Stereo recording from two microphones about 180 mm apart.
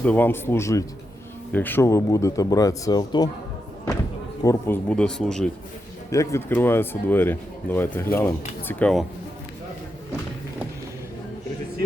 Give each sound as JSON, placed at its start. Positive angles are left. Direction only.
{"t": 0.0, "sound": "speech", "side_deg": 10}
{"t": 4.4, "sound": "speech", "side_deg": 10}
{"t": 6.1, "sound": "speech", "side_deg": 15}